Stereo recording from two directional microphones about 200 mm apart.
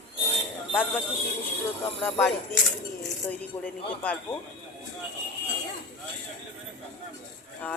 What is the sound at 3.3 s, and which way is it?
Speech, 5° left (ahead or behind).